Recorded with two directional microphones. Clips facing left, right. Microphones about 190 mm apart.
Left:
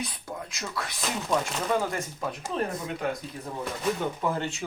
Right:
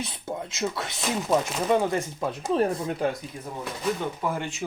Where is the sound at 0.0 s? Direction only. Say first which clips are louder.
Right 3 dB; 25° right (ahead or behind).